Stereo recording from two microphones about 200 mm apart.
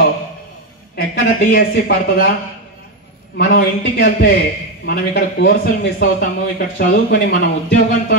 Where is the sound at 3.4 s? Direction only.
45° left (ahead or behind).